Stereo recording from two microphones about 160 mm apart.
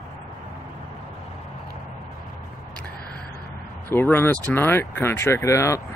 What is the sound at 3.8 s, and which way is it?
Speech, 15° left (ahead or behind).